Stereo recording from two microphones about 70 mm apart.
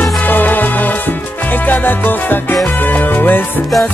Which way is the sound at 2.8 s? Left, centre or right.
Left.